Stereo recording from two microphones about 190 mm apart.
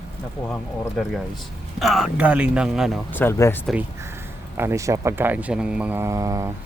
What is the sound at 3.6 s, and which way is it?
Speech, 5° right (ahead or behind).